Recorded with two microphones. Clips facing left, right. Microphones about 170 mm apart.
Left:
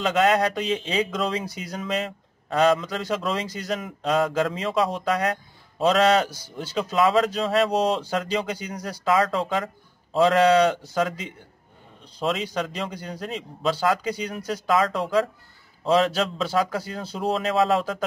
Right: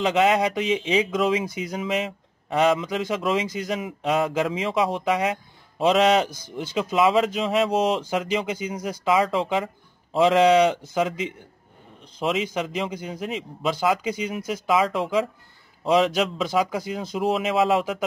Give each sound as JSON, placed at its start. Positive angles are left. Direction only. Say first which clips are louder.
{"t": 0.0, "sound": "speech", "louder": "right 1 dB", "side_deg": -15}